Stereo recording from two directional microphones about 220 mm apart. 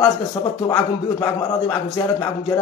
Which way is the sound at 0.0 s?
20° left (ahead or behind).